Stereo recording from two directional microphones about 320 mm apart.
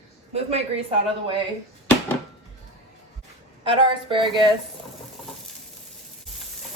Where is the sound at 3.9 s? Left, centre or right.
Centre.